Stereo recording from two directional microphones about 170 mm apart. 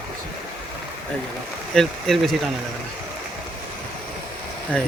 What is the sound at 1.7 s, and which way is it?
Speech, 5° left (ahead or behind).